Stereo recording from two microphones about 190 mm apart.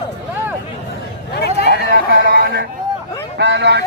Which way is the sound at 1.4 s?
60° left (ahead or behind).